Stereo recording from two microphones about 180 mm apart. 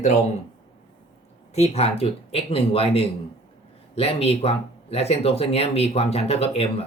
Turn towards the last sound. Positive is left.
turn(degrees=35)  # may be behind; listen again after turning